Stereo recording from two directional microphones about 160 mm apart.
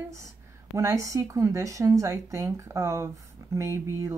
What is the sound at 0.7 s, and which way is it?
Speech, 20° right (ahead or behind).